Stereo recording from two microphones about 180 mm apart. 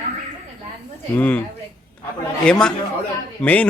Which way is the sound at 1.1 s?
10° left (ahead or behind).